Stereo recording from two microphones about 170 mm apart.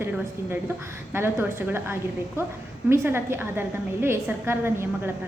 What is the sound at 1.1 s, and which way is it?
A woman's voice, 15° right (ahead or behind).